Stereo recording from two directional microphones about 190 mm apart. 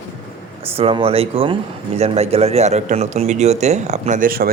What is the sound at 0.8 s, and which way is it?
A man's voice, 30° right (ahead or behind).